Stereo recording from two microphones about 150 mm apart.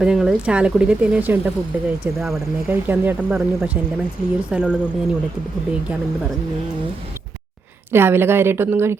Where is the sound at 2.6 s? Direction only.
15° right (ahead or behind).